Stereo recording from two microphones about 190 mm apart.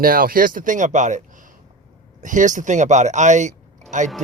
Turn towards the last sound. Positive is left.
turn(degrees=-40)  # may be behind; listen again after turning